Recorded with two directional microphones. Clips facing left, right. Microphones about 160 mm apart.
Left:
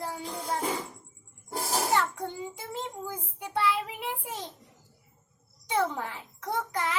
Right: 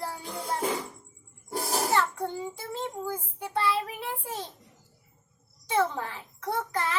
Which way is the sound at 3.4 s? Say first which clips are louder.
Even; 20° left (ahead or behind).